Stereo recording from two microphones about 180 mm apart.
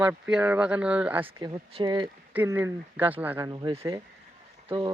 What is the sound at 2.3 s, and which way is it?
Speech, 10° right (ahead or behind).